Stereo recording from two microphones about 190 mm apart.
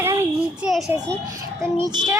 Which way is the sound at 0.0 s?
15° right (ahead or behind).